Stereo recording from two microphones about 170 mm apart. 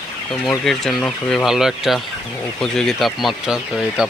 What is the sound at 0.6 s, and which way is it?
Speech, centre (ahead or behind).